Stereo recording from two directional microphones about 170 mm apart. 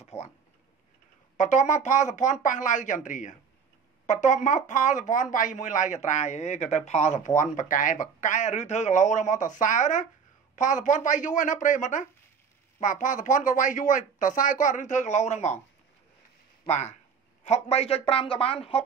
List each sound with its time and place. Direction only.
0.1 s speech: 15° left (ahead or behind)
1.3 s speech: 45° left (ahead or behind)
16.6 s a man's voice: 40° left (ahead or behind)